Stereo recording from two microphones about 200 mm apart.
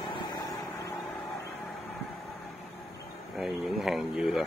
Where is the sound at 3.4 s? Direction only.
Centre (ahead or behind).